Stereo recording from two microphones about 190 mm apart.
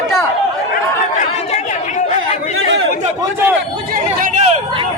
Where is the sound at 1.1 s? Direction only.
40° left (ahead or behind).